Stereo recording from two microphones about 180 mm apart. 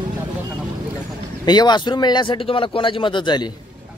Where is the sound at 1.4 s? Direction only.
25° left (ahead or behind).